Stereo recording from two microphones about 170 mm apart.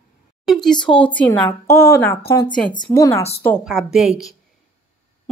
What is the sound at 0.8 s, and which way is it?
Speech, 30° left (ahead or behind).